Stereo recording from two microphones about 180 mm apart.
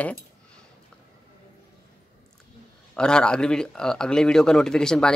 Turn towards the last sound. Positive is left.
turn(degrees=5)  # may be behind; listen again after turning